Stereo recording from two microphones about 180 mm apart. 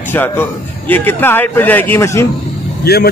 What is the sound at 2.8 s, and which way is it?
Speech, 60° left (ahead or behind).